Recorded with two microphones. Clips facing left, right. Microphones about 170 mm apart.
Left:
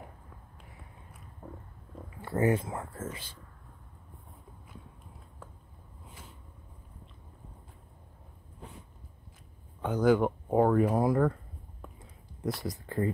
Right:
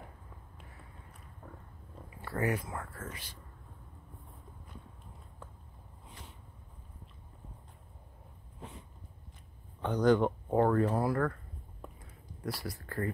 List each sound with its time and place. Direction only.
2.2 s speech: 25° left (ahead or behind)
6.0 s a sound: centre (ahead or behind)
9.8 s speech: 5° left (ahead or behind)
12.6 s speech: 20° left (ahead or behind)